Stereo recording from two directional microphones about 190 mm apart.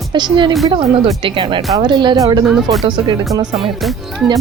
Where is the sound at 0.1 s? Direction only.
25° right (ahead or behind).